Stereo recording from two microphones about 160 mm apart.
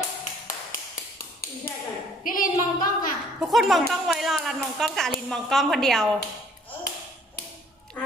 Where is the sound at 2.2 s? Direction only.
60° left (ahead or behind).